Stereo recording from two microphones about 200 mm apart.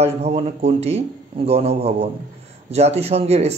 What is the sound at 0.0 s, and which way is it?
Speech, 30° right (ahead or behind).